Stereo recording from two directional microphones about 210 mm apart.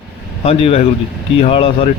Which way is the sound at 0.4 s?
30° left (ahead or behind).